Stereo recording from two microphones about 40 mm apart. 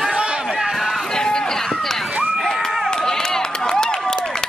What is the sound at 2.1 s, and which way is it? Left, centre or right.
Run, right.